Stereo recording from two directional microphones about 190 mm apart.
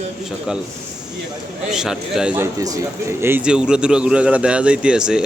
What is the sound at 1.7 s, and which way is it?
A man's voice, centre (ahead or behind).